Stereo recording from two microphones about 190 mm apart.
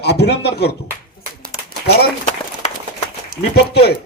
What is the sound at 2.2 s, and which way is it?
Run, 40° left (ahead or behind).